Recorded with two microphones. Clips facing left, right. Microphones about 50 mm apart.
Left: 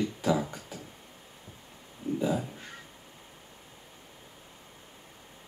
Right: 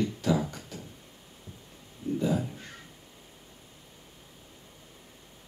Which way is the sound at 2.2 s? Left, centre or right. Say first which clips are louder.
Right 1 dB; centre.